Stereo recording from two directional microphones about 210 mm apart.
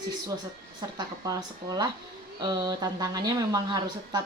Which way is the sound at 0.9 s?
15° right (ahead or behind).